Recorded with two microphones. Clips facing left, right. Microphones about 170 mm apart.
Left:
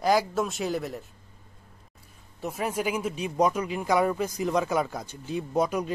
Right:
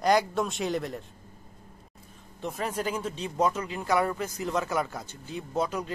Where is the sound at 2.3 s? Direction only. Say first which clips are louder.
Left 2 dB; 10° left (ahead or behind).